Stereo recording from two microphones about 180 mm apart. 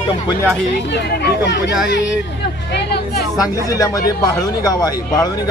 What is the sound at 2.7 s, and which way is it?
Hubbub, 65° left (ahead or behind).